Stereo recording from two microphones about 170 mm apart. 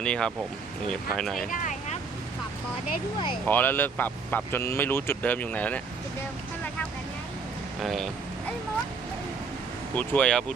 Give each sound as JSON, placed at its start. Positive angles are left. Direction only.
{"t": 0.0, "sound": "speech", "side_deg": 5}
{"t": 1.5, "sound": "vehicle", "side_deg": 50}
{"t": 3.4, "sound": "speech", "side_deg": 10}
{"t": 7.8, "sound": "speech", "side_deg": 0}
{"t": 9.9, "sound": "speech", "side_deg": 10}